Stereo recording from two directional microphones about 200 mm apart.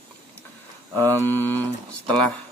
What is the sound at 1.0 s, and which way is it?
Speech, 10° left (ahead or behind).